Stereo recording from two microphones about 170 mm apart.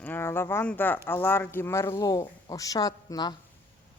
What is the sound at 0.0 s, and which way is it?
A woman's voice, 10° left (ahead or behind).